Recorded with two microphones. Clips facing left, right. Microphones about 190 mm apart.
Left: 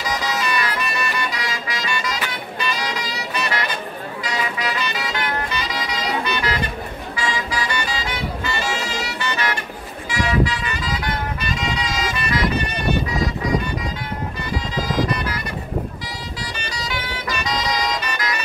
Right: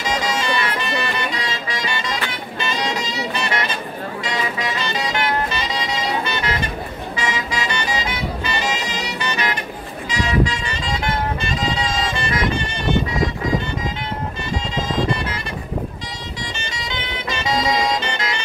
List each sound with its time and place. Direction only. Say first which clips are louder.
0.0 s music: right 2 dB; 25° right (ahead or behind)
2.6 s saxophone: right 3 dB; 25° right (ahead or behind)
5.5 s music: right 2 dB; 25° right (ahead or behind)
10.0 s vehicle: even; 25° right (ahead or behind)
14.9 s music: even; 25° right (ahead or behind)
16.5 s music: left 1 dB; 25° right (ahead or behind)